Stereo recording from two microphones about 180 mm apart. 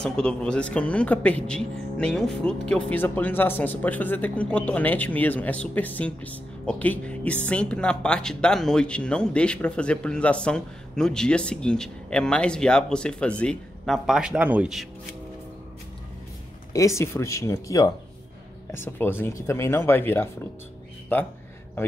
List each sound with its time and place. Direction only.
0.0 s speech: 5° left (ahead or behind)
16.7 s speech: 15° left (ahead or behind)